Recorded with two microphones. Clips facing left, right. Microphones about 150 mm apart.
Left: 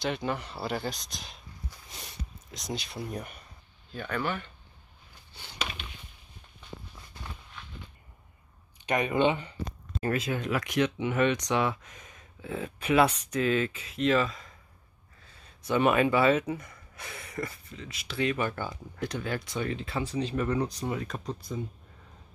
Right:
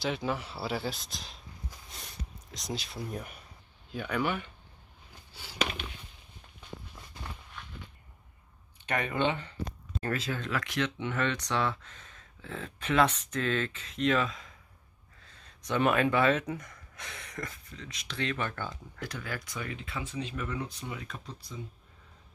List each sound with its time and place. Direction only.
0.0 s speech: centre (ahead or behind)
1.9 s a sound: centre (ahead or behind)
3.9 s speech: 10° right (ahead or behind)
5.3 s a sound: 5° right (ahead or behind)
8.8 s speech: 15° left (ahead or behind)
18.9 s speech: 25° left (ahead or behind); by 21.5 s 50° left (ahead or behind)